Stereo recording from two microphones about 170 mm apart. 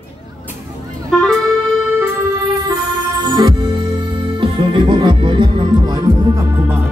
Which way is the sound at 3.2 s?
30° right (ahead or behind).